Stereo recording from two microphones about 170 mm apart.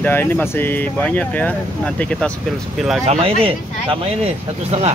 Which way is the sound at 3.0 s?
35° right (ahead or behind).